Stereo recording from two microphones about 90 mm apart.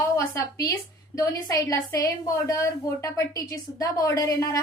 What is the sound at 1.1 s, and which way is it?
A woman's voice, 40° left (ahead or behind).